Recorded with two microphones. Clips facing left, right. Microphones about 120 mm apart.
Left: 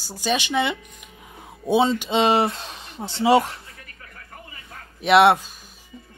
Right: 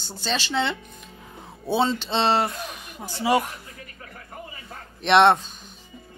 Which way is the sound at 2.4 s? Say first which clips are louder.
Left 3 dB; 25° left (ahead or behind).